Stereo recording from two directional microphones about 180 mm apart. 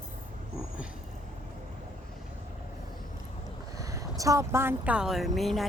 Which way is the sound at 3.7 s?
20° right (ahead or behind).